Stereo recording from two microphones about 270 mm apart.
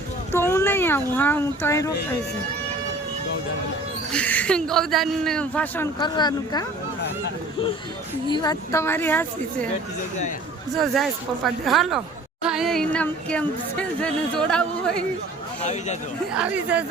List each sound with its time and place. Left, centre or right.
0.3 s speech: centre
4.1 s a woman's voice: centre
8.3 s speech: centre
10.8 s a woman's voice: centre
15.6 s a man's voice: left
16.3 s a woman's voice: centre